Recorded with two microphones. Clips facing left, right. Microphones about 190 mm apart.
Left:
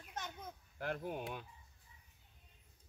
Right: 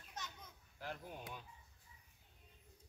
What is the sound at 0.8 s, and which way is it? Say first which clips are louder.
Speech: left 8 dB; 60° left (ahead or behind).